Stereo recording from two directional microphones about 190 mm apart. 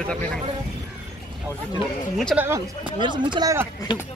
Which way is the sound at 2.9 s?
25° right (ahead or behind).